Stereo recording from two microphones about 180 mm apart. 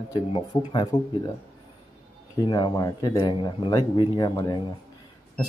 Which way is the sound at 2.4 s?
25° left (ahead or behind).